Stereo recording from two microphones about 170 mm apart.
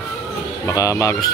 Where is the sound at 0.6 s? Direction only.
20° left (ahead or behind).